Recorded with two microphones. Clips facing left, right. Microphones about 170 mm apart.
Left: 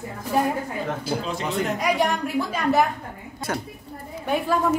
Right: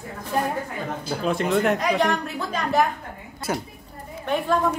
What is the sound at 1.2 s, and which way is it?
Speech, 60° right (ahead or behind).